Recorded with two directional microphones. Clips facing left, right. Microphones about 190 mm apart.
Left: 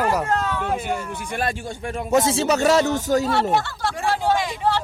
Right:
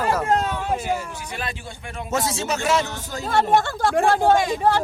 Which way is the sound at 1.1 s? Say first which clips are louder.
Left 6 dB; 55° left (ahead or behind).